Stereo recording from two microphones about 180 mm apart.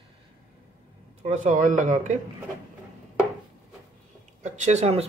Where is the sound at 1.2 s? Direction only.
40° right (ahead or behind).